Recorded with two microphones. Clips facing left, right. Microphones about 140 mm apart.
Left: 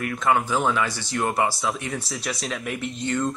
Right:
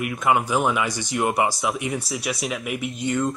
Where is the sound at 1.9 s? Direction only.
Centre (ahead or behind).